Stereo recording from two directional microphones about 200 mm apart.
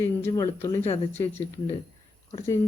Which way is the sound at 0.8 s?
30° left (ahead or behind).